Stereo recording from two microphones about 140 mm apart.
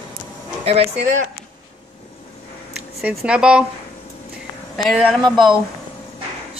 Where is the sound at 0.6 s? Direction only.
45° right (ahead or behind).